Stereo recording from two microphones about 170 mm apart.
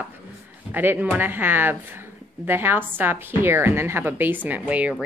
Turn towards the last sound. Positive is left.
turn(degrees=-5)  # may be behind; listen again after turning